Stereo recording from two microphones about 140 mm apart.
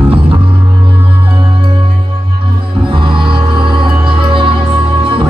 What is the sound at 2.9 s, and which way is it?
Music, 35° right (ahead or behind).